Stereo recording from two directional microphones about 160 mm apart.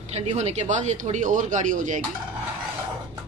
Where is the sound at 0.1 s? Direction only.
40° right (ahead or behind).